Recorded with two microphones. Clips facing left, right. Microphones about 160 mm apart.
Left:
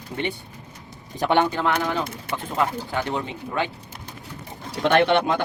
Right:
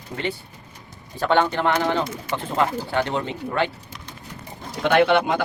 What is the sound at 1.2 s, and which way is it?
Speech, 15° left (ahead or behind).